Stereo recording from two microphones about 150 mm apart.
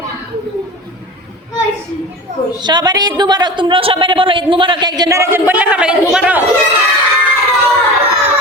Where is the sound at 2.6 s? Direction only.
30° right (ahead or behind); by 6.4 s 5° right (ahead or behind).